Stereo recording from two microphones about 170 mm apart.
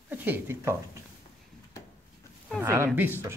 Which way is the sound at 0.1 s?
10° right (ahead or behind).